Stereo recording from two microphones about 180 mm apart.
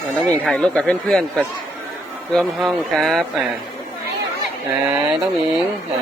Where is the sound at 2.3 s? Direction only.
Centre (ahead or behind).